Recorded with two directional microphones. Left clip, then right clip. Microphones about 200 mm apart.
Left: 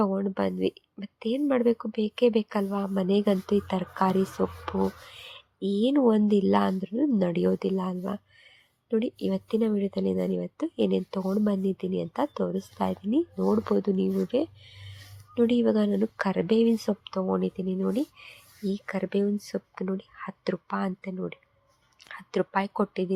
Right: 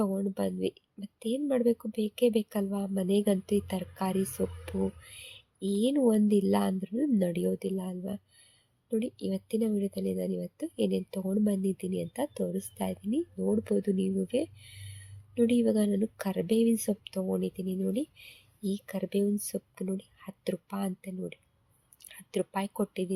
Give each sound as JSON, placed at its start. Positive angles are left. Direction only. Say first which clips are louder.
{"t": 0.0, "sound": "speech", "louder": "left 5 dB", "side_deg": 5}